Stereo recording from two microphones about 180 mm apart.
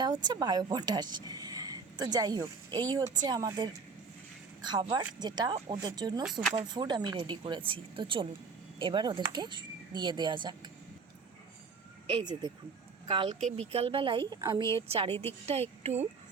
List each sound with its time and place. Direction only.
0.0 s a woman's voice: 20° right (ahead or behind)
12.1 s a woman's voice: 25° right (ahead or behind)